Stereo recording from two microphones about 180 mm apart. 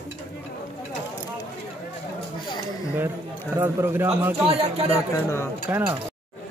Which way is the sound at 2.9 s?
10° right (ahead or behind).